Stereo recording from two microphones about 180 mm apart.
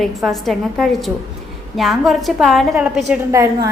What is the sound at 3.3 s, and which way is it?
Speech, 15° right (ahead or behind).